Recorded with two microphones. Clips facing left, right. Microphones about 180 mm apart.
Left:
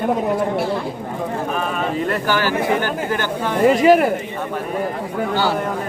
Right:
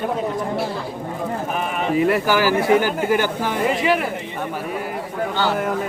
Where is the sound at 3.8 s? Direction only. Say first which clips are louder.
Left 7 dB; 45° left (ahead or behind).